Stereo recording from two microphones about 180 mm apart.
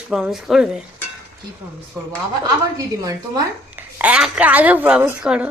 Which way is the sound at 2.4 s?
20° right (ahead or behind).